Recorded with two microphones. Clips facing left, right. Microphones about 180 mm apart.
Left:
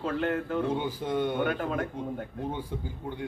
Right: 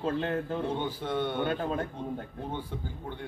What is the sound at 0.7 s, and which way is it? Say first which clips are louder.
Speech: left 2 dB; 10° left (ahead or behind).